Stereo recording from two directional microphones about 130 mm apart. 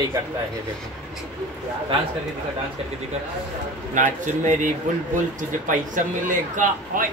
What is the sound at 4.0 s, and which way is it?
A man's voice, 75° right (ahead or behind).